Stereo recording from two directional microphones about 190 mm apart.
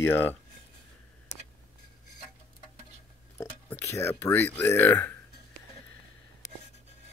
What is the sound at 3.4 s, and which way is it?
Speech, 10° left (ahead or behind).